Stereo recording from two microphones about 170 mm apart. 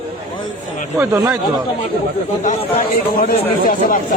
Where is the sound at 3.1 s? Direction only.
55° left (ahead or behind).